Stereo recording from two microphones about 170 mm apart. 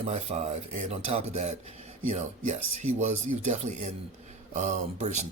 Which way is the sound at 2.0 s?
40° right (ahead or behind).